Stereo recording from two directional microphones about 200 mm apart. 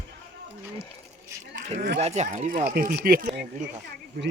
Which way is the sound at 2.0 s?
35° right (ahead or behind).